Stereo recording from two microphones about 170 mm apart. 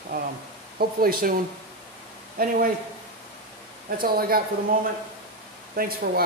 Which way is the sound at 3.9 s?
60° right (ahead or behind).